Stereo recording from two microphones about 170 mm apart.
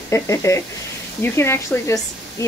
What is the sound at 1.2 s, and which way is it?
Speech, 15° left (ahead or behind).